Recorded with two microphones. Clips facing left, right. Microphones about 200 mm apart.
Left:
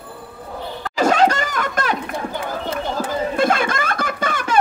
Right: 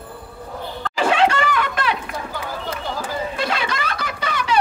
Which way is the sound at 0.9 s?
40° left (ahead or behind).